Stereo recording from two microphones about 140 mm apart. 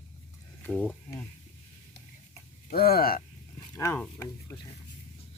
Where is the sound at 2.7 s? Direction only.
90° left.